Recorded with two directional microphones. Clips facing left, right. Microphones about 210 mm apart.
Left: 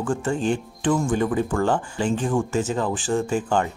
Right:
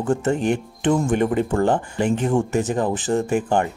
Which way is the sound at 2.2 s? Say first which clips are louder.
Right 3 dB; 25° right (ahead or behind).